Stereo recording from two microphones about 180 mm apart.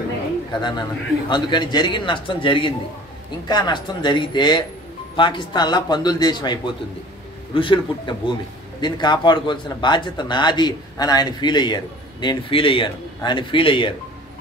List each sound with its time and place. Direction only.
0.6 s speech: 25° left (ahead or behind)